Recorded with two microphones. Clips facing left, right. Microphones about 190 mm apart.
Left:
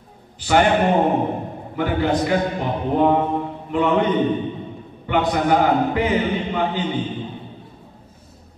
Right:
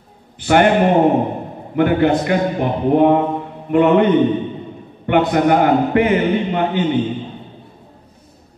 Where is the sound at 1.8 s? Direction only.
60° right (ahead or behind).